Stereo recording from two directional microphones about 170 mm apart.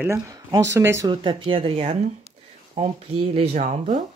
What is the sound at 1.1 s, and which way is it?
Speech, 30° right (ahead or behind).